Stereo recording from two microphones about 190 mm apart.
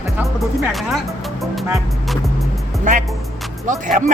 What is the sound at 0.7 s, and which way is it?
Speech, centre (ahead or behind).